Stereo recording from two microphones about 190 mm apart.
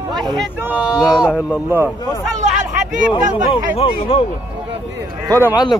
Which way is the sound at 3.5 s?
30° left (ahead or behind).